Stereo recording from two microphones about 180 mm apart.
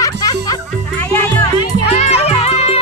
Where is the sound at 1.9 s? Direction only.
35° left (ahead or behind).